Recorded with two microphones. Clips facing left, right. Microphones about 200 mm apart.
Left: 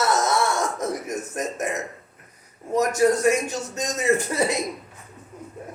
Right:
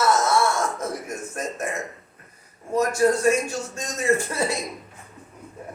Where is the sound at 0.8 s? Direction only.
20° left (ahead or behind).